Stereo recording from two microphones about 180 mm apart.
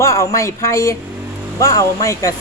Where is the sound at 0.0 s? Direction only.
15° left (ahead or behind).